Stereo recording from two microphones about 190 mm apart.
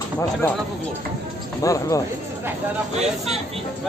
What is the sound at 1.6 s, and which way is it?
Speech, 15° left (ahead or behind).